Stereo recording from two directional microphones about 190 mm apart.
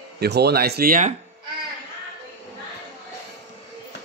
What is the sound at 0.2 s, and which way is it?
Speech, 60° right (ahead or behind).